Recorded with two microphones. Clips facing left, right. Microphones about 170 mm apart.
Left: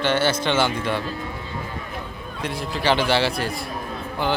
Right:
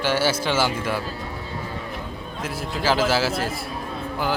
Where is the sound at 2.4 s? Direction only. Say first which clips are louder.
Left 1 dB; 5° right (ahead or behind).